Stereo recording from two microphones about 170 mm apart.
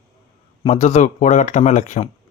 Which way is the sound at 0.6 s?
40° left (ahead or behind).